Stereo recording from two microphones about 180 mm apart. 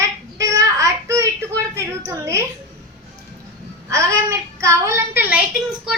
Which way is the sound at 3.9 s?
15° right (ahead or behind).